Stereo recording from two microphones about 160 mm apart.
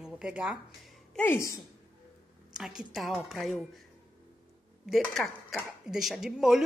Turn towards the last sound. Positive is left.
turn(degrees=0)  # may be behind; listen again after turning